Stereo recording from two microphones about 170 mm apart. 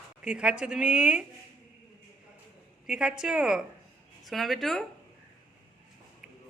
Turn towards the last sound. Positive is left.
turn(degrees=0)  # may be behind; listen again after turning